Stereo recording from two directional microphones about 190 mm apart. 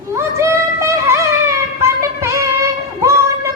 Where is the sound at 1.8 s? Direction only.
15° right (ahead or behind).